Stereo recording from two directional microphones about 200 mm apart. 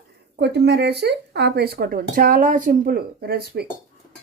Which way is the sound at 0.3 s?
55° right (ahead or behind).